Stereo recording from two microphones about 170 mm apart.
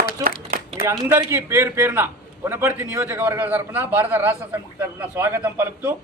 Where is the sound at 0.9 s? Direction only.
15° right (ahead or behind).